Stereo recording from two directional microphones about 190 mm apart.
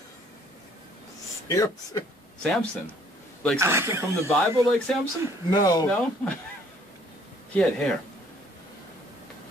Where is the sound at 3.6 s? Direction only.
15° right (ahead or behind).